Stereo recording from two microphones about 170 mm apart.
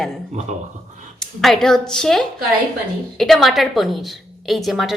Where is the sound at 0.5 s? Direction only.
45° right (ahead or behind).